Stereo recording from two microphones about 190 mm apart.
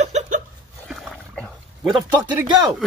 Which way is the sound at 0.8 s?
Centre (ahead or behind).